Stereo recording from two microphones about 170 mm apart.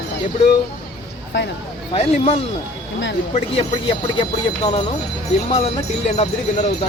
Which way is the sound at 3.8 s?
30° left (ahead or behind).